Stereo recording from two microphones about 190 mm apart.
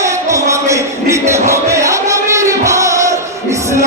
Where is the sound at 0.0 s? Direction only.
15° right (ahead or behind).